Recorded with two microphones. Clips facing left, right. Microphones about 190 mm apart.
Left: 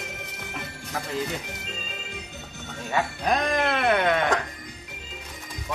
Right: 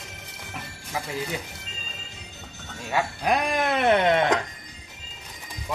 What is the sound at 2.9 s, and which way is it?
Speech, 10° right (ahead or behind).